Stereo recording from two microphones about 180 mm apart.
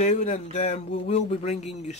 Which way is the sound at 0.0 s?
40° left (ahead or behind).